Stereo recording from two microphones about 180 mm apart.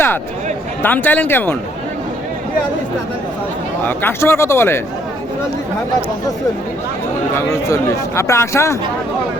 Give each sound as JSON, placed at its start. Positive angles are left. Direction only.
{"t": 0.8, "sound": "speech", "side_deg": 10}
{"t": 3.8, "sound": "speech", "side_deg": 15}
{"t": 7.3, "sound": "speech", "side_deg": 15}